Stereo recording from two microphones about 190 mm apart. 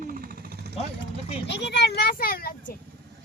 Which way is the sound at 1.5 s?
65° left (ahead or behind).